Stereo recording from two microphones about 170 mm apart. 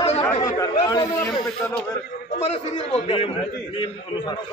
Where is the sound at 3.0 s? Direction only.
35° left (ahead or behind).